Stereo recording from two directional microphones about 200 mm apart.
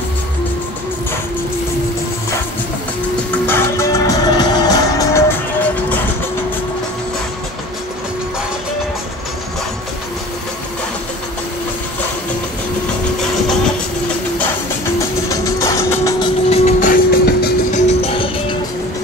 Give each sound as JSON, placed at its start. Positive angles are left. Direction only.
{"t": 3.4, "sound": "music", "side_deg": 10}
{"t": 15.2, "sound": "music", "side_deg": 15}
{"t": 16.4, "sound": "train", "side_deg": 30}